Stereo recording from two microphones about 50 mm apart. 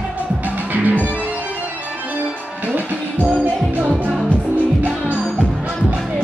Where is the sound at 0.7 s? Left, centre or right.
Right.